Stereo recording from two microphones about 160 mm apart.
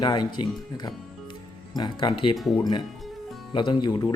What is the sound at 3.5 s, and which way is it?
Speech, 30° left (ahead or behind).